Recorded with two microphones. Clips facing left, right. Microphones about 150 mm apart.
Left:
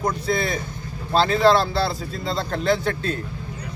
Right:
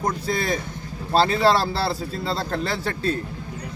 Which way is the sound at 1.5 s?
35° right (ahead or behind).